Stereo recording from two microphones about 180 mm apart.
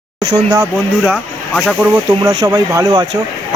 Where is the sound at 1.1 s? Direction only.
5° left (ahead or behind).